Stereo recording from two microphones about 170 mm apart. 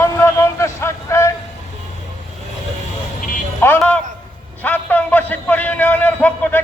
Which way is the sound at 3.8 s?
5° left (ahead or behind).